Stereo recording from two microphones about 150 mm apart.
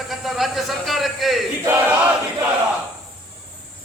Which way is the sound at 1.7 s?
10° right (ahead or behind).